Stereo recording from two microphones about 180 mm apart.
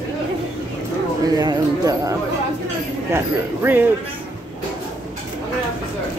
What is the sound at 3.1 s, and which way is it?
Speech, 10° right (ahead or behind).